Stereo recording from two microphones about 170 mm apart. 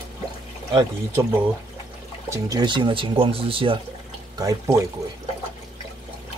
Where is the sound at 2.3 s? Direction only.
20° right (ahead or behind).